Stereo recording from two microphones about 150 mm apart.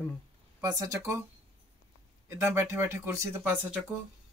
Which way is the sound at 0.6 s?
20° right (ahead or behind).